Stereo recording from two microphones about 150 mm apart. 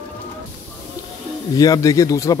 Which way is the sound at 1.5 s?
25° left (ahead or behind).